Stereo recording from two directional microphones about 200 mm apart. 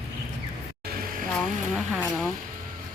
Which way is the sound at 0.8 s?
45° right (ahead or behind).